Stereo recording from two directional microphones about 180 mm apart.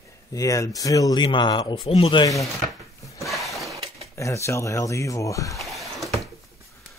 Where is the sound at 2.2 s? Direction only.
15° left (ahead or behind).